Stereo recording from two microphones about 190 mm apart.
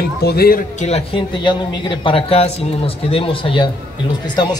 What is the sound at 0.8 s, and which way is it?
Speech, 35° left (ahead or behind).